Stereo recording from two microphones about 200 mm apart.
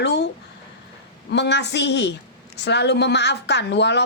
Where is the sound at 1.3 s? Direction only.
60° left (ahead or behind).